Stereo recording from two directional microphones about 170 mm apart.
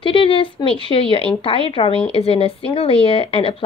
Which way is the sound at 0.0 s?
30° left (ahead or behind).